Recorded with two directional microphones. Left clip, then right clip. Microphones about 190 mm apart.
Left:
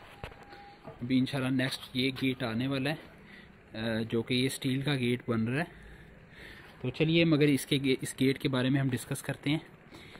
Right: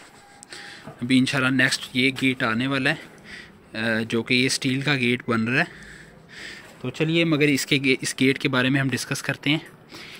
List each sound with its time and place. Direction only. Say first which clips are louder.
1.0 s speech: right 10 dB; centre (ahead or behind)
6.3 s a sound: right 12 dB; 10° left (ahead or behind)
6.8 s speech: right 5 dB; 25° left (ahead or behind); by 10.1 s 5° left (ahead or behind)